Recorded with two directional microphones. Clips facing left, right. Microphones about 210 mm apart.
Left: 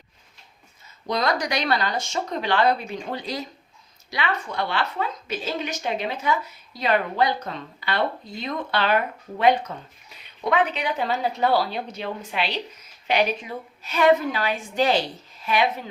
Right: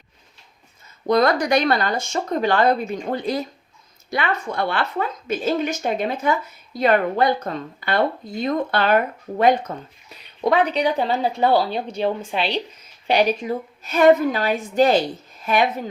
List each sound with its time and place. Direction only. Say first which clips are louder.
1.0 s a woman's voice: right 7 dB; 50° right (ahead or behind)